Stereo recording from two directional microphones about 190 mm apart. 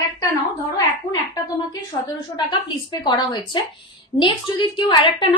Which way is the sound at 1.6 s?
20° left (ahead or behind).